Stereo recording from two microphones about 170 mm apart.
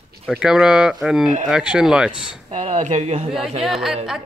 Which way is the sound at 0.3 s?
5° right (ahead or behind).